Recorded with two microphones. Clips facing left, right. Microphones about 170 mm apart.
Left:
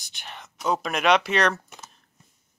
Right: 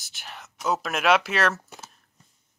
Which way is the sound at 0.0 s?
5° right (ahead or behind).